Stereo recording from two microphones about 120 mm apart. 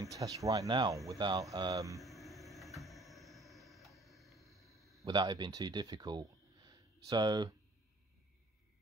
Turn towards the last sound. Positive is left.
turn(degrees=-35)  # may be behind; listen again after turning